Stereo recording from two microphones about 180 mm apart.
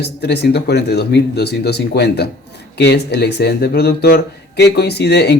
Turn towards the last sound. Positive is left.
turn(degrees=65)  # may be behind; listen again after turning